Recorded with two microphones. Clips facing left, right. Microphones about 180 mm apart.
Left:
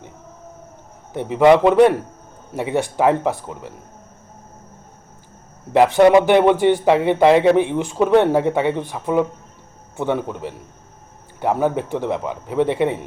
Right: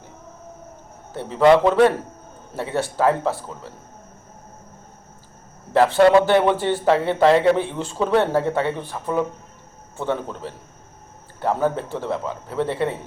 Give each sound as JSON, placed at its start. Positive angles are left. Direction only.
{"t": 1.1, "sound": "a man's voice", "side_deg": 15}
{"t": 5.7, "sound": "a man's voice", "side_deg": 15}